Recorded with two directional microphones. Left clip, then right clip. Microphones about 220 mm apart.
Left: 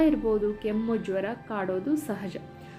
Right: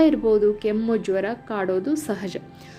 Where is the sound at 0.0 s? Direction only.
15° right (ahead or behind).